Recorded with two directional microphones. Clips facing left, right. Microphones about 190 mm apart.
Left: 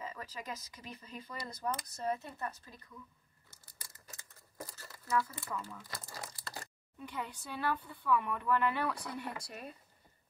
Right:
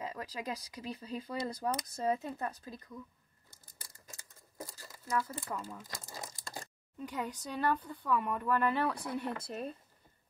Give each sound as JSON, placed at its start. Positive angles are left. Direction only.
{"t": 0.0, "sound": "a woman's voice", "side_deg": -35}
{"t": 4.6, "sound": "crumpling", "side_deg": -15}
{"t": 5.2, "sound": "a woman's voice", "side_deg": -35}
{"t": 5.8, "sound": "speech", "side_deg": -20}
{"t": 6.4, "sound": "a sound", "side_deg": -15}
{"t": 7.1, "sound": "a woman's voice", "side_deg": -40}
{"t": 8.9, "sound": "speech", "side_deg": -25}